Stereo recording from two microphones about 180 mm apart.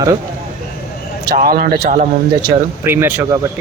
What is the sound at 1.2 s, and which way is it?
Speech, 55° right (ahead or behind).